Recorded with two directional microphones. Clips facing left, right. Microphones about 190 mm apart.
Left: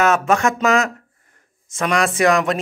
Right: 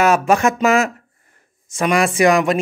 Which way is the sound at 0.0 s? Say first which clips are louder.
Right 2 dB; 15° right (ahead or behind).